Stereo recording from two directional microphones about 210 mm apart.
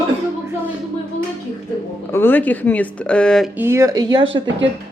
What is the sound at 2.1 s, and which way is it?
Speech, 10° left (ahead or behind).